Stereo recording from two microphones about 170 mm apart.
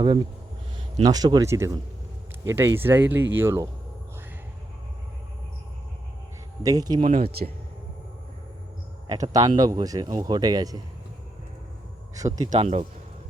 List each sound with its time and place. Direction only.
1.0 s speech: 20° right (ahead or behind)
6.6 s speech: 20° right (ahead or behind)
7.0 s speech: 45° right (ahead or behind)
7.3 s speech: 65° right (ahead or behind)
9.0 s speech: 20° right (ahead or behind)
12.1 s speech: 20° right (ahead or behind)
12.5 s speech: 40° right (ahead or behind)